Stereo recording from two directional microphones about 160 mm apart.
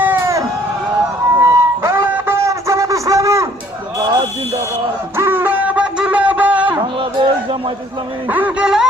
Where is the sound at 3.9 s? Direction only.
25° right (ahead or behind).